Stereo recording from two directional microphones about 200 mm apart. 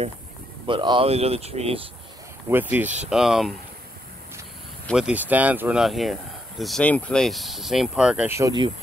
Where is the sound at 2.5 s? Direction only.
10° right (ahead or behind).